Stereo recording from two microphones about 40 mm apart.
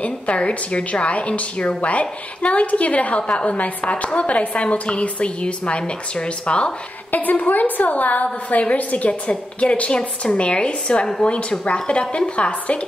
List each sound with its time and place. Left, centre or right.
0.0 s a woman's voice: left
7.1 s a woman's voice: left